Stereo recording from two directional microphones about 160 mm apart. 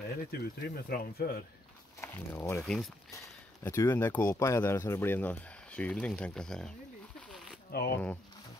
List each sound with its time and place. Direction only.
0.3 s speech: 75° left (ahead or behind)
2.0 s speech: 15° left (ahead or behind)
7.7 s speech: 75° left (ahead or behind)